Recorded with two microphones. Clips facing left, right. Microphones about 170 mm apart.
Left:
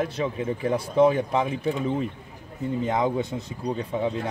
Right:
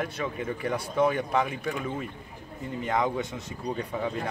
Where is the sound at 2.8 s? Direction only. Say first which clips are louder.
Left 2 dB; 25° left (ahead or behind).